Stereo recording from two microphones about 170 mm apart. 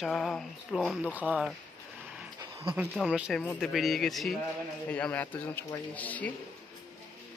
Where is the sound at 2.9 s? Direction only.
5° right (ahead or behind).